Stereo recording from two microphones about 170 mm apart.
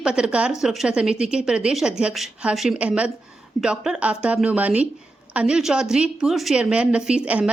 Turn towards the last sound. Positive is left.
turn(degrees=-5)  # may be behind; listen again after turning